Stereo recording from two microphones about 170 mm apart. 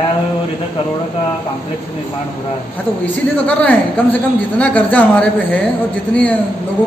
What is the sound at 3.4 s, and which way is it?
A man's voice, 10° left (ahead or behind).